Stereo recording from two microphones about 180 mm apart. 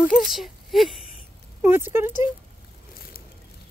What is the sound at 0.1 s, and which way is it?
Speech, centre (ahead or behind).